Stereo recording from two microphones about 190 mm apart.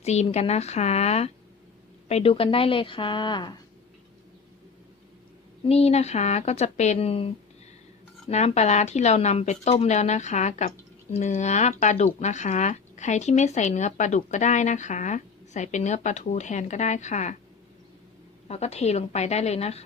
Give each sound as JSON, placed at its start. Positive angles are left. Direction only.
{"t": 0.0, "sound": "a woman's voice", "side_deg": 35}
{"t": 5.6, "sound": "speech", "side_deg": 35}
{"t": 18.4, "sound": "speech", "side_deg": 35}